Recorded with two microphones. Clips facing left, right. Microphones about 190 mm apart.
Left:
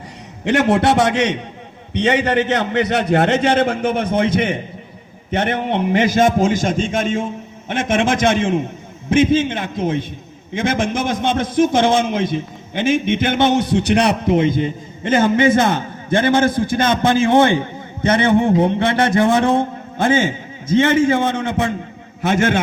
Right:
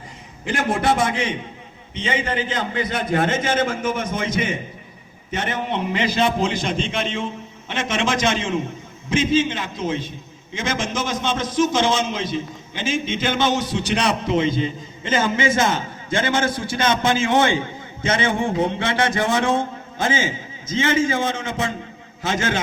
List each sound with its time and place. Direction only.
0.4 s a man's voice: 70° left (ahead or behind)
18.3 s a sound: 20° left (ahead or behind)
18.6 s a man's voice: 55° left (ahead or behind)